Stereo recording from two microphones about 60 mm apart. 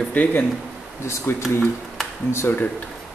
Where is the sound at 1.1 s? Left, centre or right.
Left.